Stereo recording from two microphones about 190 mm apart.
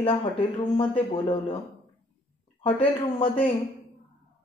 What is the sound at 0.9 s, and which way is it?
Speech, 25° left (ahead or behind).